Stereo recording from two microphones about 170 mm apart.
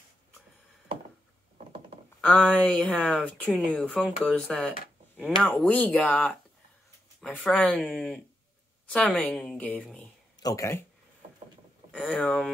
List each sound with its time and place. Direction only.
2.4 s a woman's voice: 5° left (ahead or behind)
10.4 s speech: 20° left (ahead or behind)
11.9 s a woman's voice: 5° left (ahead or behind)